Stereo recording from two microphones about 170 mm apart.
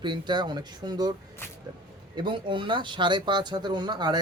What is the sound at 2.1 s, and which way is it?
Speech, 25° right (ahead or behind).